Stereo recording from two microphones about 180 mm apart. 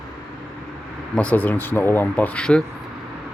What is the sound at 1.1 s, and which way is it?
Speech, 10° left (ahead or behind).